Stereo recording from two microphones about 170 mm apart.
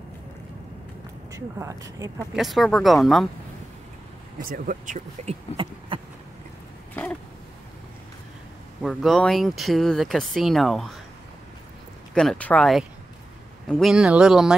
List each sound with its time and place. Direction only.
1.3 s speech: 20° right (ahead or behind)
2.3 s speech: centre (ahead or behind)
4.4 s speech: 55° right (ahead or behind)
5.9 s a sound: 30° right (ahead or behind)
8.8 s speech: centre (ahead or behind)
12.1 s speech: 5° left (ahead or behind)